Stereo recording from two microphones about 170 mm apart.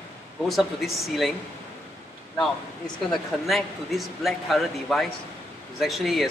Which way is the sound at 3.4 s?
Centre (ahead or behind).